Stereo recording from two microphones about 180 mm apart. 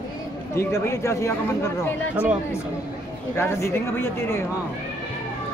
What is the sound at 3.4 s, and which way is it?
Speech, 15° left (ahead or behind).